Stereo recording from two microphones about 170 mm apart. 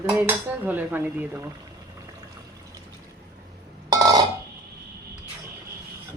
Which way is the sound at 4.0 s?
20° right (ahead or behind).